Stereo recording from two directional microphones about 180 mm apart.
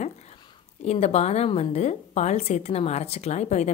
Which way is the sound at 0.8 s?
35° left (ahead or behind).